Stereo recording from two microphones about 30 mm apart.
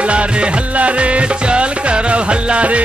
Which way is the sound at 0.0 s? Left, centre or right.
Right.